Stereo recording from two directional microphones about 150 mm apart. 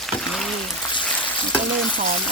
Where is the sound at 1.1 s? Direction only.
10° left (ahead or behind).